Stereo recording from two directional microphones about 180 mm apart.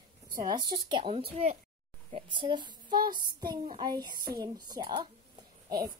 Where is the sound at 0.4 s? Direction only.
25° right (ahead or behind).